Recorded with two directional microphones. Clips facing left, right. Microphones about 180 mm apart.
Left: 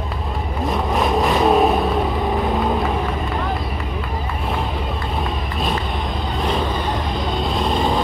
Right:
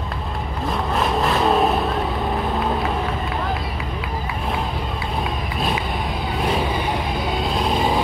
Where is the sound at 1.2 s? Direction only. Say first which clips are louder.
Left 3 dB; 15° left (ahead or behind).